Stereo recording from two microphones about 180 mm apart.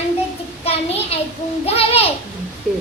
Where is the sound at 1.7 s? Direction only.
35° left (ahead or behind).